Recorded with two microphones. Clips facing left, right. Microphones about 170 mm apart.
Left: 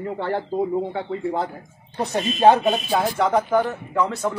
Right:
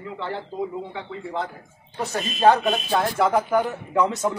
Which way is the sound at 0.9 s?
40° left (ahead or behind).